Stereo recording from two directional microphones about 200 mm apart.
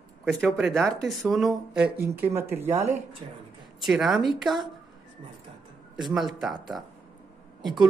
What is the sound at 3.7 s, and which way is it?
Speech, centre (ahead or behind).